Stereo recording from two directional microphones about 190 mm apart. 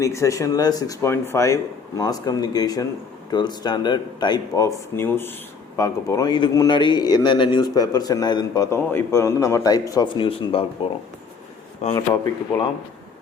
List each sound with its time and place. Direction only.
0.0 s a man's voice: 15° left (ahead or behind)
11.9 s a man's voice: 20° left (ahead or behind)